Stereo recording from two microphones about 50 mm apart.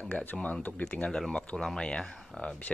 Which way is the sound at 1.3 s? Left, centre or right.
Centre.